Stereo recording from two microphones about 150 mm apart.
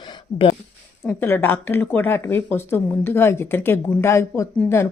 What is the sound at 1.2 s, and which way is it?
Speech, 15° left (ahead or behind).